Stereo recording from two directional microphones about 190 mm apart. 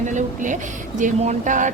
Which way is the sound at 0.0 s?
40° right (ahead or behind).